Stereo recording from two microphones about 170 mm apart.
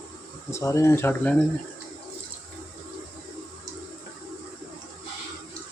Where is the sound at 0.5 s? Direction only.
20° left (ahead or behind).